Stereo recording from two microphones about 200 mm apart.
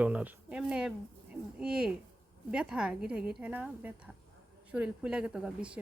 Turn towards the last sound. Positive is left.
turn(degrees=-5)  # may be behind; listen again after turning